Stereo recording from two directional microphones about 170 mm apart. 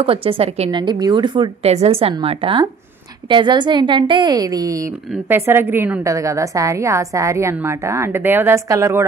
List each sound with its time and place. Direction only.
0.0 s a woman's voice: 30° right (ahead or behind)